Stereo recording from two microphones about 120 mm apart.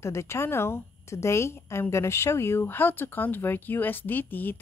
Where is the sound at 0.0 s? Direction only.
25° left (ahead or behind).